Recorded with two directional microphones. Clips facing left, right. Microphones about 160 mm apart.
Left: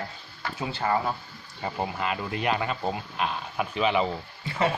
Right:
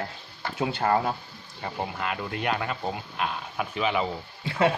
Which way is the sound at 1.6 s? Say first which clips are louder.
Left 2 dB; centre (ahead or behind).